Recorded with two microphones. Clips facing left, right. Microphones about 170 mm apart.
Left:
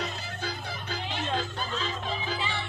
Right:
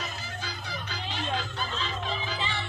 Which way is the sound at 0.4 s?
55° left (ahead or behind).